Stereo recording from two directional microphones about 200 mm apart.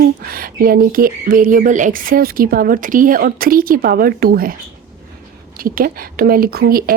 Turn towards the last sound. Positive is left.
turn(degrees=-50)  # may be behind; listen again after turning